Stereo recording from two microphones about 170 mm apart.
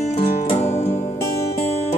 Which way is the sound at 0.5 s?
35° left (ahead or behind).